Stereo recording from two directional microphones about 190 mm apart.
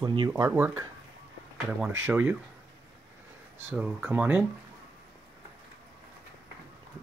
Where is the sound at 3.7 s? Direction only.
5° right (ahead or behind).